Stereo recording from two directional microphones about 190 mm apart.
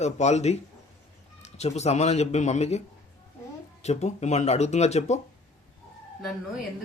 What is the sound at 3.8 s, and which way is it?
Speech, 35° left (ahead or behind).